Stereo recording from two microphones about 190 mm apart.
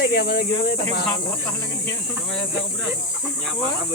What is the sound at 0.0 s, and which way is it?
Speech, 60° left (ahead or behind).